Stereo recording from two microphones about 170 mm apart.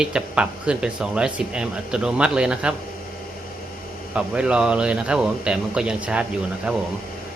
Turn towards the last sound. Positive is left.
turn(degrees=-5)  # may be behind; listen again after turning